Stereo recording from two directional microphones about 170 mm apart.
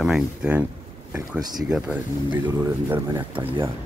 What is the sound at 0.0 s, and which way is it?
Speech, 5° right (ahead or behind).